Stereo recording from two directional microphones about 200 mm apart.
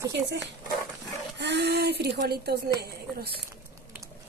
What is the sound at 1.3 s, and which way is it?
A woman's voice, 60° right (ahead or behind).